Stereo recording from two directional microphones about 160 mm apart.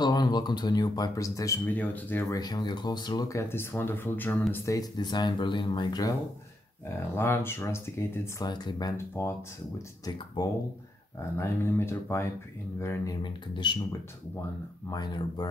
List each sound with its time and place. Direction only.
0.0 s speech: 25° left (ahead or behind)
2.3 s speech: 25° left (ahead or behind)
7.2 s speech: 15° left (ahead or behind)
8.9 s speech: 15° left (ahead or behind)
14.9 s speech: 25° left (ahead or behind)